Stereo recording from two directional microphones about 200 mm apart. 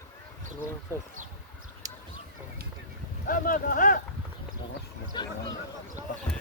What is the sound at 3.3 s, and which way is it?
Speech, 40° left (ahead or behind).